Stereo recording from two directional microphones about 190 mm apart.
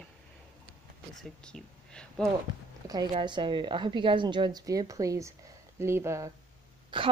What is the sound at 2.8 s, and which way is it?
A woman's voice, 20° right (ahead or behind).